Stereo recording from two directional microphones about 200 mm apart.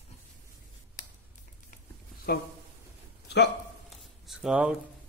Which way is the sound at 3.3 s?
55° left (ahead or behind).